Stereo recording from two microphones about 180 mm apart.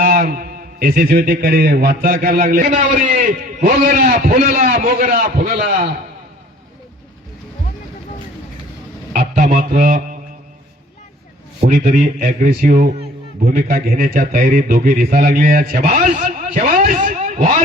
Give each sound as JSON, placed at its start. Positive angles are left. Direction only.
{"t": 0.0, "sound": "a man's voice", "side_deg": -55}
{"t": 9.1, "sound": "speech", "side_deg": -45}
{"t": 11.6, "sound": "a man's voice", "side_deg": -45}